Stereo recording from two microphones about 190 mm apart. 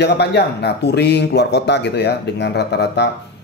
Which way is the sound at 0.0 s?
60° left (ahead or behind).